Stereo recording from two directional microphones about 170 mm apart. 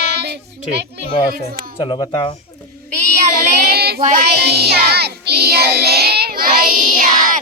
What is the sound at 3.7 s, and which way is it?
Child singing, 70° right (ahead or behind).